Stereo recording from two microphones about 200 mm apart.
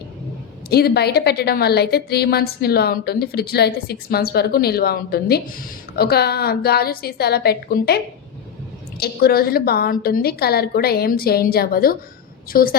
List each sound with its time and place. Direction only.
0.7 s a woman's voice: 55° left (ahead or behind)